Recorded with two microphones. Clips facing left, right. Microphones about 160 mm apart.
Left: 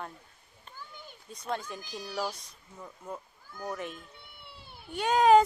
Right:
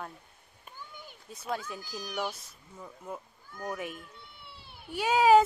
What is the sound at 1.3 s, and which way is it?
Speech, 5° right (ahead or behind).